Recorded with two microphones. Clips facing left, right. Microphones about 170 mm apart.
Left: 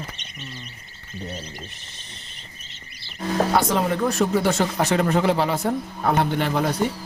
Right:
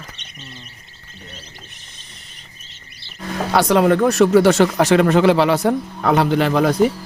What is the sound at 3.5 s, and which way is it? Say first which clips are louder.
Speech: right 12 dB; 75° right (ahead or behind).